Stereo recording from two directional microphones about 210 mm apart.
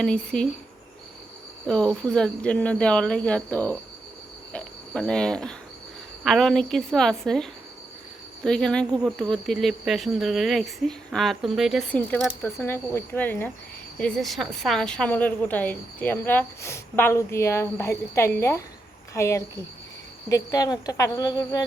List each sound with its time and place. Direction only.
0.0 s speech: 5° left (ahead or behind)
1.6 s a woman's voice: 5° left (ahead or behind)